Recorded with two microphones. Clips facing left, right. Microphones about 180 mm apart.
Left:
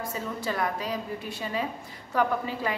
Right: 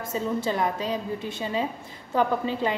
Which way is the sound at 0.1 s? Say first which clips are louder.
Right 9 dB; 25° right (ahead or behind).